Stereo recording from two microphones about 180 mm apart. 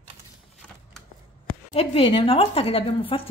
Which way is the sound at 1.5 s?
35° left (ahead or behind).